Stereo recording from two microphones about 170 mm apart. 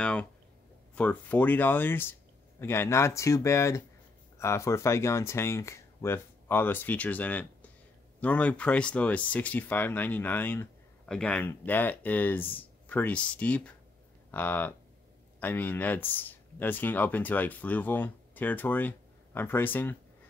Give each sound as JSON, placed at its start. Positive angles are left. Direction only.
{"t": 0.0, "sound": "speech", "side_deg": 5}